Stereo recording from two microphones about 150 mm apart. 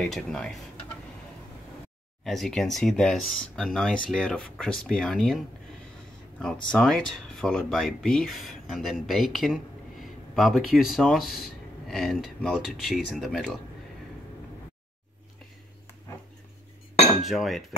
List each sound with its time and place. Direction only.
0.0 s speech: centre (ahead or behind)
2.2 s speech: centre (ahead or behind)
6.4 s speech: 5° left (ahead or behind)
17.2 s speech: centre (ahead or behind)